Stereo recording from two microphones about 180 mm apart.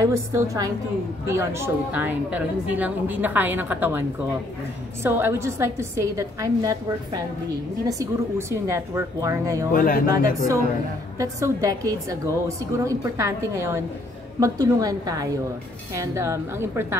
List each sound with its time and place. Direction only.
0.0 s a woman's voice: 15° right (ahead or behind)
5.0 s a woman's voice: 15° right (ahead or behind)
9.7 s speech: 50° left (ahead or behind)
11.1 s a woman's voice: 20° right (ahead or behind)